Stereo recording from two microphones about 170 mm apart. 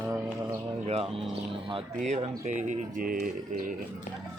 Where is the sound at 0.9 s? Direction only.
35° right (ahead or behind).